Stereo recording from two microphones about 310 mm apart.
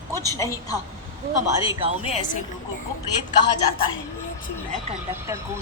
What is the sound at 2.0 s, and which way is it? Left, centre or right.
Speech, left.